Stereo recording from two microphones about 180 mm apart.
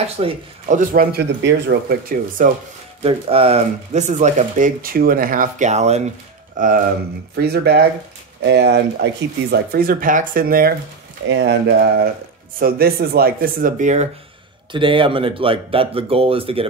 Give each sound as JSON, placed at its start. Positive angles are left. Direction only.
{"t": 0.2, "sound": "speech", "side_deg": -35}
{"t": 0.7, "sound": "speech", "side_deg": -50}
{"t": 3.0, "sound": "speech", "side_deg": -30}
{"t": 7.3, "sound": "speech", "side_deg": -65}
{"t": 11.2, "sound": "speech", "side_deg": -75}
{"t": 14.7, "sound": "speech", "side_deg": -30}